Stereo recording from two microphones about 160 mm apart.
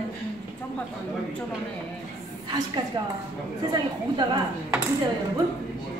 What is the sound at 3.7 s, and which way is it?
Speech, 25° right (ahead or behind).